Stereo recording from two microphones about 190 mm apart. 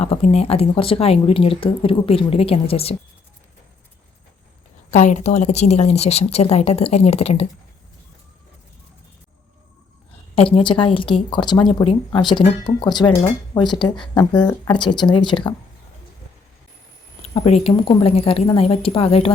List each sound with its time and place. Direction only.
0.0 s speech: 35° left (ahead or behind)
4.9 s speech: 40° left (ahead or behind)
10.3 s speech: 30° left (ahead or behind)
17.3 s speech: 30° left (ahead or behind)